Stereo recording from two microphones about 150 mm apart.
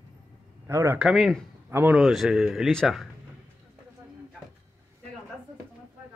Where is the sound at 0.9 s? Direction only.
Centre (ahead or behind).